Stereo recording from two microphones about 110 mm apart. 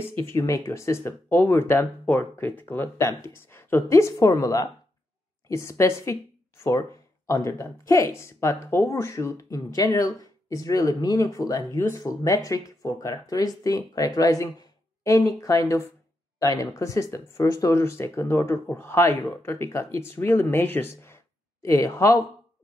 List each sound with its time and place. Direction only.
0.0 s speech: 20° left (ahead or behind)